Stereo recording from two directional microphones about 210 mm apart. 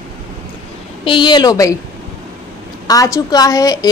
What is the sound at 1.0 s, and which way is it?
Speech, 25° left (ahead or behind).